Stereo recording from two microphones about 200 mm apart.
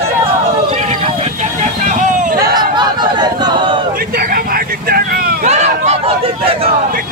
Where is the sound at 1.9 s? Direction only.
40° right (ahead or behind).